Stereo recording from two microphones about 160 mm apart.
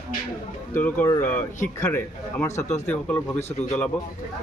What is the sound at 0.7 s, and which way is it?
Speech, 10° left (ahead or behind).